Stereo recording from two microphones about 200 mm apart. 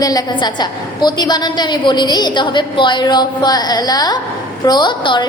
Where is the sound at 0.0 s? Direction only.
20° left (ahead or behind).